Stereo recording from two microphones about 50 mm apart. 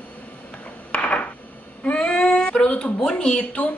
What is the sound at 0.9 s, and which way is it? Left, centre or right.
Coin, left.